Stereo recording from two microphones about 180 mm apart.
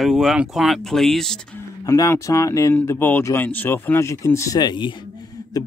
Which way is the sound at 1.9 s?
15° left (ahead or behind).